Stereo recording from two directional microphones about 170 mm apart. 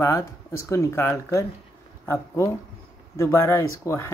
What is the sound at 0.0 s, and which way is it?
Speech, 15° left (ahead or behind).